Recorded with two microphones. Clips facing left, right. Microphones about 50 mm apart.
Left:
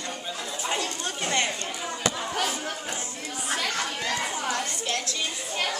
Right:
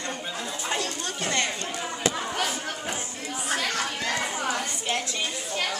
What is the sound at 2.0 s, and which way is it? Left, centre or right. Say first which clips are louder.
Chatter: even; centre.